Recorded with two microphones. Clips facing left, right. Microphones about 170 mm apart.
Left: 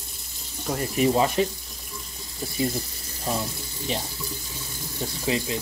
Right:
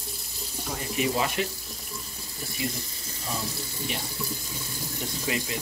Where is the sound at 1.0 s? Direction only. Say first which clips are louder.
Left 6 dB; 30° left (ahead or behind).